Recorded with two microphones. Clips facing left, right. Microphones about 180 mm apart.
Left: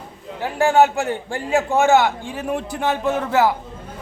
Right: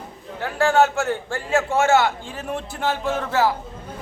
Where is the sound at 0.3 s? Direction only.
15° left (ahead or behind).